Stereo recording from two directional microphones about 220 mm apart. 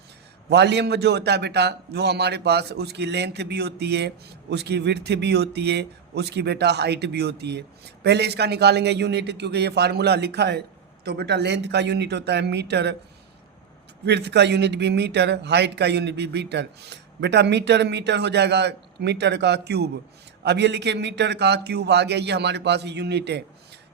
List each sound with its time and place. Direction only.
0.5 s a man's voice: 50° right (ahead or behind)
14.0 s a man's voice: 50° right (ahead or behind)